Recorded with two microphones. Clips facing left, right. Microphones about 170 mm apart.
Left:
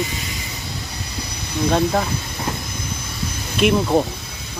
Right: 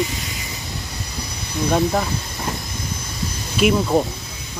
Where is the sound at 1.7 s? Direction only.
Centre (ahead or behind).